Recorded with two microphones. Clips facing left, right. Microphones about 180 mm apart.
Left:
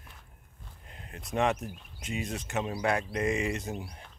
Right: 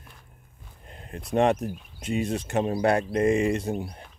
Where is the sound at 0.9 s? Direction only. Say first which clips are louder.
Right 8 dB; 30° right (ahead or behind).